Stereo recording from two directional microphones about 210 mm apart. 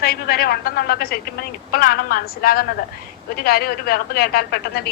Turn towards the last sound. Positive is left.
turn(degrees=50)  # may be behind; listen again after turning